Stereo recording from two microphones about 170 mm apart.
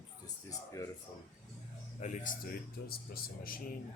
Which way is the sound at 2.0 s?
45° left (ahead or behind).